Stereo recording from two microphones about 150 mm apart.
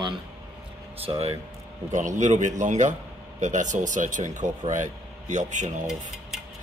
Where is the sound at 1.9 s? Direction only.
55° right (ahead or behind).